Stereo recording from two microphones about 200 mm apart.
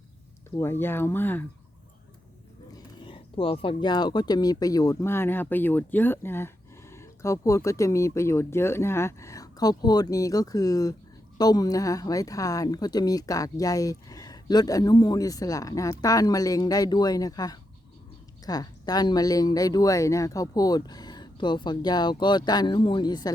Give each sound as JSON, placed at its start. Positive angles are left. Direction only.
{"t": 0.6, "sound": "speech", "side_deg": 10}
{"t": 2.7, "sound": "speech", "side_deg": 25}